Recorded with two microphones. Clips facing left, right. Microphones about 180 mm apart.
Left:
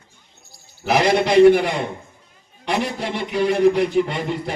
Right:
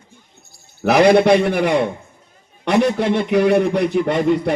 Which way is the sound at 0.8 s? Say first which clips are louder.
Right 6 dB; 60° right (ahead or behind).